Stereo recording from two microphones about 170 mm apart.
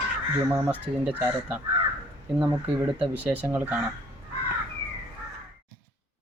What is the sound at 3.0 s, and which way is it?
Speech, 10° right (ahead or behind).